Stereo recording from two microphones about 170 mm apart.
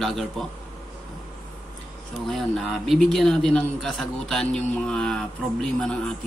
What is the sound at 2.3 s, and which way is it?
Speech, centre (ahead or behind).